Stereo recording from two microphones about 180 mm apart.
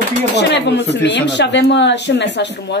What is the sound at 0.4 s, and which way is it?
Speech, 70° left (ahead or behind).